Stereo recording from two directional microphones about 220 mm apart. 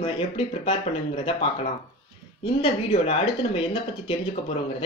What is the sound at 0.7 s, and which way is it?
Speech, 25° left (ahead or behind).